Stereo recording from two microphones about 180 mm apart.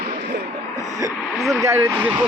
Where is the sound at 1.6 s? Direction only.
15° right (ahead or behind).